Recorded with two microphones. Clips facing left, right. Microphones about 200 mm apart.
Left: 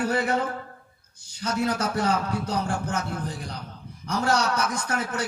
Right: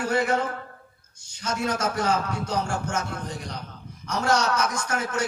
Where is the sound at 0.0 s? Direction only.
35° left (ahead or behind).